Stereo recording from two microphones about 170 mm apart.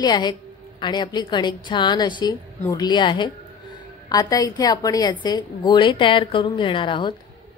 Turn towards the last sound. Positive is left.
turn(degrees=30)  # may be behind; listen again after turning